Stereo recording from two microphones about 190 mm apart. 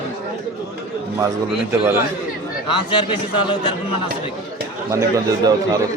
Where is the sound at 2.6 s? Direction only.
25° left (ahead or behind).